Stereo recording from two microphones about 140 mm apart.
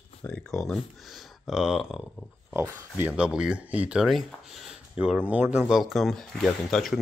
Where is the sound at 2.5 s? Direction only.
15° right (ahead or behind).